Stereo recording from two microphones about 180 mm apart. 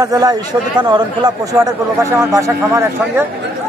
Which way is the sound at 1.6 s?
15° right (ahead or behind).